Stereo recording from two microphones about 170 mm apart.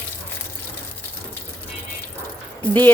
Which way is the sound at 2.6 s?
10° left (ahead or behind).